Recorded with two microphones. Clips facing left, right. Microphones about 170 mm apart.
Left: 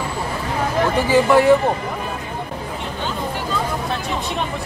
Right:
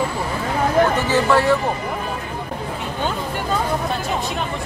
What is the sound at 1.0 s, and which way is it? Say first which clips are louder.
Speech: left 3 dB; 15° left (ahead or behind).